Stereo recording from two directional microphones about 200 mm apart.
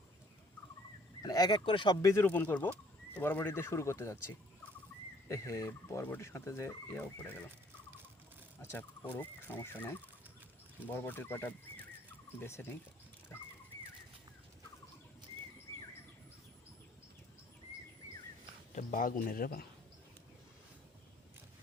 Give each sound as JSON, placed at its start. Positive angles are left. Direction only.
{"t": 1.2, "sound": "speech", "side_deg": 20}
{"t": 8.6, "sound": "speech", "side_deg": 10}
{"t": 18.7, "sound": "speech", "side_deg": 40}